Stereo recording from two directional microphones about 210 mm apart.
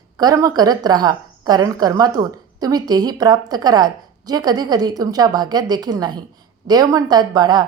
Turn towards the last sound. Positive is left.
turn(degrees=-20)  # may be behind; listen again after turning